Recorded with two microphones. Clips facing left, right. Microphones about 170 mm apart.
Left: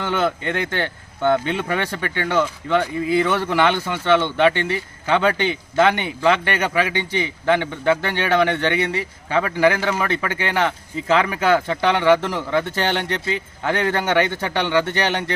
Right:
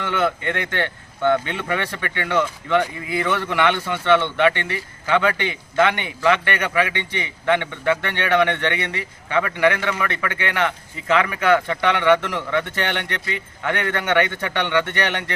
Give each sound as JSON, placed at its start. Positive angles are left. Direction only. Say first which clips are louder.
{"t": 0.2, "sound": "speech", "louder": "right 2 dB", "side_deg": 30}